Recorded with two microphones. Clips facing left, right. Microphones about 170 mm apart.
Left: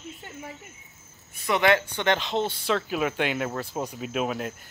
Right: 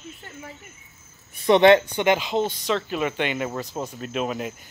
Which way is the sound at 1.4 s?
25° right (ahead or behind).